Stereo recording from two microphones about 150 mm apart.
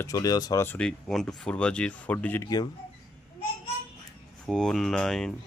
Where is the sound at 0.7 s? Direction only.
5° left (ahead or behind).